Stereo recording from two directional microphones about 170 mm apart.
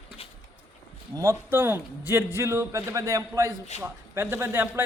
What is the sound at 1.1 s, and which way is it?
A man's voice, 20° right (ahead or behind).